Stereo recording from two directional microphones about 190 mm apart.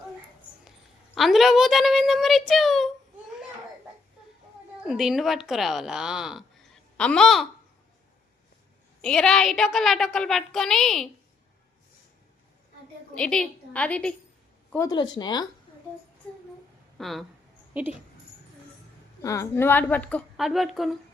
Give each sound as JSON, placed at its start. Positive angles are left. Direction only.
{"t": 1.1, "sound": "a child's voice", "side_deg": 0}
{"t": 4.9, "sound": "a child's voice", "side_deg": 0}
{"t": 9.0, "sound": "a child's voice", "side_deg": 5}
{"t": 13.1, "sound": "a child's voice", "side_deg": 5}
{"t": 14.7, "sound": "speech", "side_deg": 15}
{"t": 17.0, "sound": "a child's voice", "side_deg": 0}
{"t": 19.2, "sound": "a woman's voice", "side_deg": 15}